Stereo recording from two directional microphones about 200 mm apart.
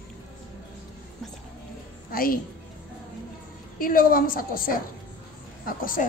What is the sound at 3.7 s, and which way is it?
Speech, 45° left (ahead or behind).